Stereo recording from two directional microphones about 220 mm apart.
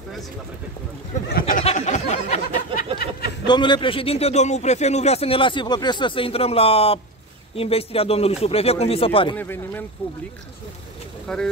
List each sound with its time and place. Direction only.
1.4 s a sound: 30° left (ahead or behind)
3.4 s a man's voice: 20° left (ahead or behind)
9.4 s speech: 10° left (ahead or behind)
11.3 s speech: 5° left (ahead or behind)